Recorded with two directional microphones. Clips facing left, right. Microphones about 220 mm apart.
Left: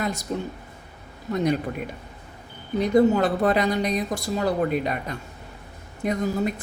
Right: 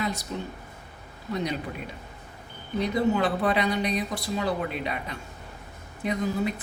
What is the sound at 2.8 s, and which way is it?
Speech, 45° left (ahead or behind).